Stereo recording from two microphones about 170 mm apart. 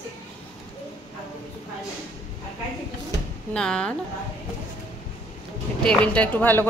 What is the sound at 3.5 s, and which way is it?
Speech, 5° left (ahead or behind).